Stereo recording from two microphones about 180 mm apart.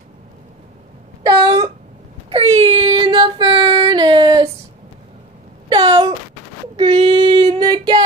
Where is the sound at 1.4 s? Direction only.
20° right (ahead or behind).